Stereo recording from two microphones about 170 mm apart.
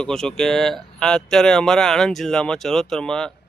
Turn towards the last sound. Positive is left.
turn(degrees=5)  # may be behind; listen again after turning